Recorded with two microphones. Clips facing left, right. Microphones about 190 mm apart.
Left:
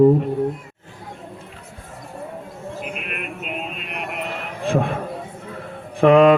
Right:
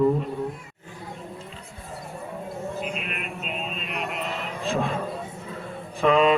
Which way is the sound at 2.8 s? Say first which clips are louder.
Left 2 dB; 55° left (ahead or behind).